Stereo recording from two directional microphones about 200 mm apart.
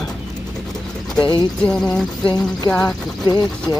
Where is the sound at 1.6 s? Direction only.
5° left (ahead or behind).